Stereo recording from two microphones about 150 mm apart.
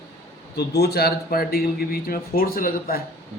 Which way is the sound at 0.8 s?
90° left.